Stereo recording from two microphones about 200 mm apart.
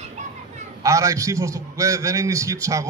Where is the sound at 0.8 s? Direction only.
15° right (ahead or behind).